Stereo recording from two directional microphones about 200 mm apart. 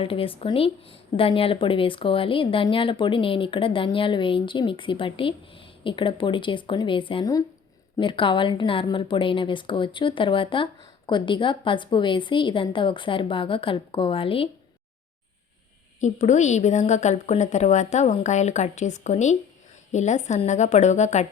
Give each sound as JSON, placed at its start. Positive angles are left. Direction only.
{"t": 0.0, "sound": "speech", "side_deg": 25}
{"t": 16.0, "sound": "a woman's voice", "side_deg": 35}